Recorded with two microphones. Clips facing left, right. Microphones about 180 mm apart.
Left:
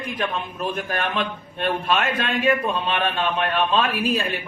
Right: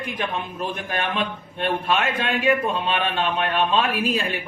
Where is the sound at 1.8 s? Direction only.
15° right (ahead or behind).